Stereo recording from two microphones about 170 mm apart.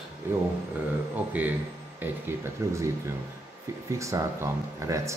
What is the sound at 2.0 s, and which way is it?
Speech, 15° right (ahead or behind).